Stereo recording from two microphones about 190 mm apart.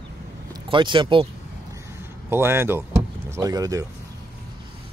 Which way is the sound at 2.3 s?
10° right (ahead or behind).